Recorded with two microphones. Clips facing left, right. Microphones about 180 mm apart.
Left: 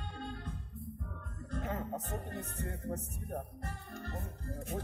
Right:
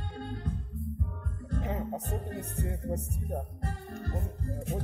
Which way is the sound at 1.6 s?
15° right (ahead or behind).